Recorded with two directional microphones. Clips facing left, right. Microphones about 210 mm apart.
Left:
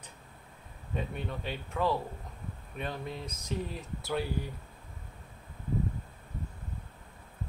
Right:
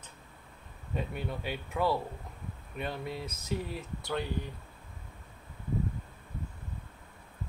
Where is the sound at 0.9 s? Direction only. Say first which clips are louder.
Even; 5° right (ahead or behind).